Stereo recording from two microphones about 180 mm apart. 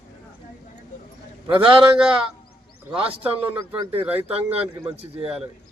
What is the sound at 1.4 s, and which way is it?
Speech, 30° right (ahead or behind).